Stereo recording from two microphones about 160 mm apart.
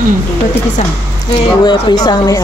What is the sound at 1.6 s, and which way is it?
Speech, 25° left (ahead or behind).